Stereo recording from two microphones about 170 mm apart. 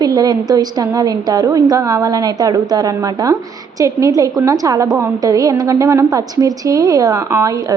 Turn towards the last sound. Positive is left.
turn(degrees=-20)  # may be behind; listen again after turning